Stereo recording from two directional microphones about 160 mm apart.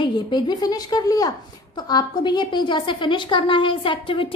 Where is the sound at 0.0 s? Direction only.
30° left (ahead or behind).